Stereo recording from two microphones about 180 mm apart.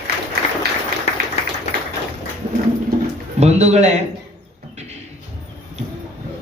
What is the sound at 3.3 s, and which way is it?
Speech, 40° right (ahead or behind).